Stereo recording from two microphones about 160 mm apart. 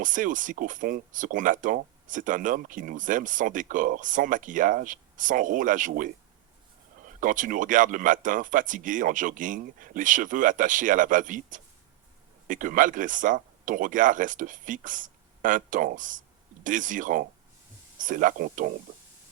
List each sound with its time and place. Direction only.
0.0 s speech: 55° right (ahead or behind)
7.2 s speech: 55° right (ahead or behind)